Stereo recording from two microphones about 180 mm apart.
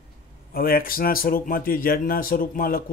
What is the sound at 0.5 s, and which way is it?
Speech, 55° left (ahead or behind).